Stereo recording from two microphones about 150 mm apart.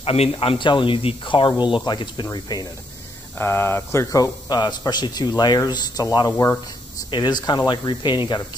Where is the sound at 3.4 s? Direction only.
15° left (ahead or behind).